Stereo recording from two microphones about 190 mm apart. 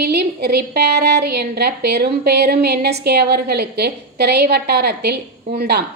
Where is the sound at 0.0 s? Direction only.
60° right (ahead or behind).